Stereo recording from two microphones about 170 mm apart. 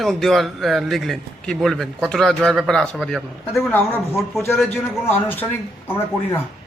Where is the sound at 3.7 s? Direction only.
15° left (ahead or behind).